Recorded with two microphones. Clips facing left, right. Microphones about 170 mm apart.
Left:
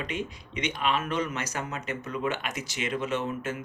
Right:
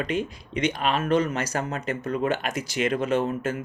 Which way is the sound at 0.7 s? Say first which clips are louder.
Right 4 dB; 40° right (ahead or behind).